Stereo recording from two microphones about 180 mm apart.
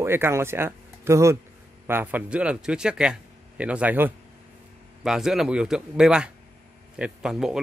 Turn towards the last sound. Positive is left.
turn(degrees=-5)  # may be behind; listen again after turning